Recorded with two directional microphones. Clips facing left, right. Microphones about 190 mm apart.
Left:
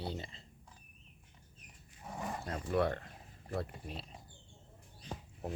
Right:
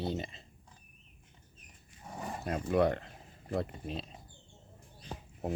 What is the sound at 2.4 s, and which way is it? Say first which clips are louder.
Speech: right 5 dB; 20° right (ahead or behind).